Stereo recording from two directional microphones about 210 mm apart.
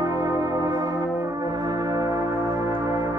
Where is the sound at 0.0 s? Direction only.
15° right (ahead or behind).